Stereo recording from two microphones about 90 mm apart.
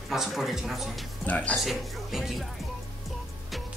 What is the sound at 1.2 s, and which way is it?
Speech, 15° left (ahead or behind).